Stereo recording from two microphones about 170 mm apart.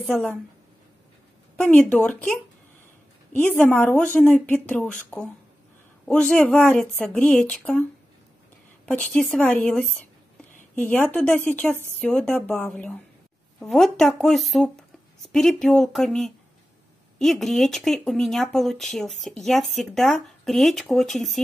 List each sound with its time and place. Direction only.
0.0 s speech: 5° left (ahead or behind)
1.6 s speech: 10° left (ahead or behind)
3.3 s speech: 10° left (ahead or behind)
8.8 s speech: 5° left (ahead or behind)